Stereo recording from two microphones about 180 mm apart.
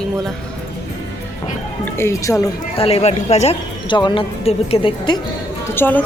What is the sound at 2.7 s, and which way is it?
Speech, 35° left (ahead or behind).